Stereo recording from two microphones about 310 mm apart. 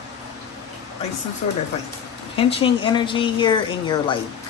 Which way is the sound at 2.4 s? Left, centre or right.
Centre.